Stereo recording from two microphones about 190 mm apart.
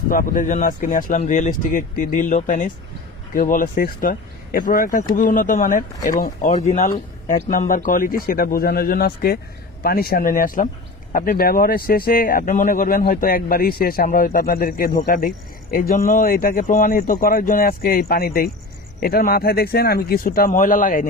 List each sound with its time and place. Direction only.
0.1 s speech: 45° left (ahead or behind)
6.5 s speech: 35° left (ahead or behind)